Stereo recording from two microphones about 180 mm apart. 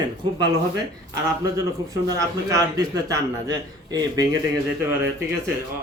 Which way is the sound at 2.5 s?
20° right (ahead or behind).